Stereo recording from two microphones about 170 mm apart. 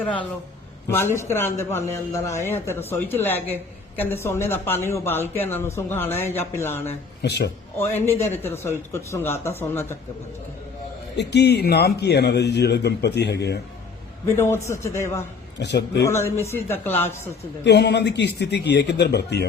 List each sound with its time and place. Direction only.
0.9 s a man's voice: 15° left (ahead or behind)
7.2 s a man's voice: 90° left
8.0 s a man's voice: 15° left (ahead or behind)
11.2 s a man's voice: 80° left
14.3 s a man's voice: 15° left (ahead or behind)
15.5 s a man's voice: 90° left
16.0 s a man's voice: 15° left (ahead or behind)
17.6 s a man's voice: 85° left